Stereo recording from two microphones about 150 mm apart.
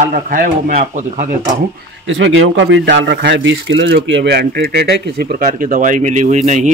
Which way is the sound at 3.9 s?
90° right.